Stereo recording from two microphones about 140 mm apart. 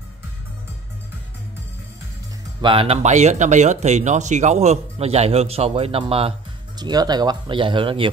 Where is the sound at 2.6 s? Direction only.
40° right (ahead or behind).